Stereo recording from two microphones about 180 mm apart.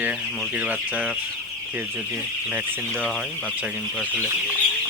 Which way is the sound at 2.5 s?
10° right (ahead or behind).